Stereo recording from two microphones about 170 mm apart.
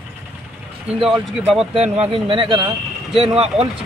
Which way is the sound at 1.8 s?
35° right (ahead or behind).